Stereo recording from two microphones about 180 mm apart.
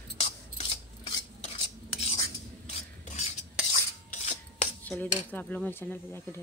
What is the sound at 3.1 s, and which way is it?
Stir, 40° left (ahead or behind).